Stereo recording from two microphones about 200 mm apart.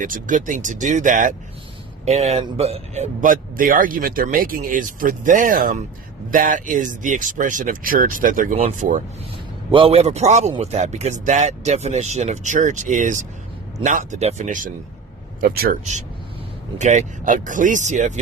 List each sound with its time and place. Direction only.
0.0 s speech: 40° right (ahead or behind)
16.7 s speech: 35° right (ahead or behind)